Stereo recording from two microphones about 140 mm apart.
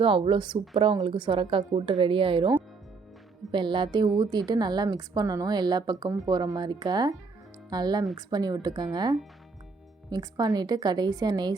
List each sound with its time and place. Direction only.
0.0 s a woman's voice: 40° right (ahead or behind)